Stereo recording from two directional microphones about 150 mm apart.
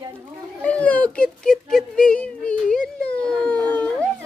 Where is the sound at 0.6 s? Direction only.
10° left (ahead or behind).